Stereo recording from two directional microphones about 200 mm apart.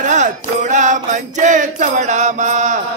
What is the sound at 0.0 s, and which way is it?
Music, 35° right (ahead or behind).